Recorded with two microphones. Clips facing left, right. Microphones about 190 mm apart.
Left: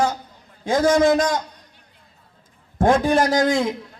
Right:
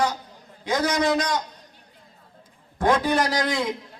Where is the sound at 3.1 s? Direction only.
50° left (ahead or behind).